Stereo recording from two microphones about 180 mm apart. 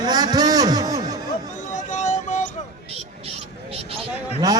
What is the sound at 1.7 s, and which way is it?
Vehicle, 45° left (ahead or behind).